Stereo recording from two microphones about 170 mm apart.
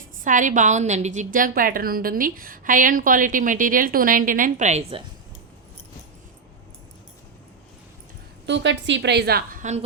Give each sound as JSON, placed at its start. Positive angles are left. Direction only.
{"t": 0.3, "sound": "a woman's voice", "side_deg": -50}
{"t": 8.4, "sound": "a woman's voice", "side_deg": -90}